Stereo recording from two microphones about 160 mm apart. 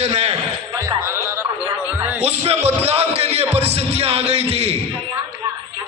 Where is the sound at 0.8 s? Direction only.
15° right (ahead or behind).